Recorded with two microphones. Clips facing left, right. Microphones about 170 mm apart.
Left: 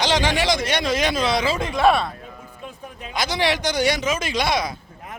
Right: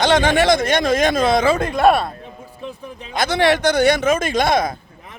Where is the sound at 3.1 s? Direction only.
55° right (ahead or behind).